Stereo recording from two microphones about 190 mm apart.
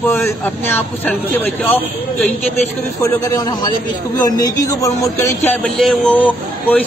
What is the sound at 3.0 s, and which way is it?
A man's voice, 20° left (ahead or behind).